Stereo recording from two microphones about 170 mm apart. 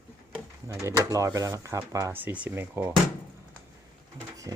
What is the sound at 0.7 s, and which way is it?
Speech, 20° right (ahead or behind).